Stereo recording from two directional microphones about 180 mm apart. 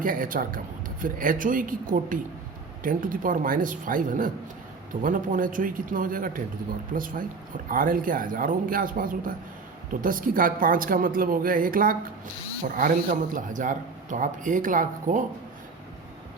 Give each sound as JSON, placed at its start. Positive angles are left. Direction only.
{"t": 0.0, "sound": "speech", "side_deg": -50}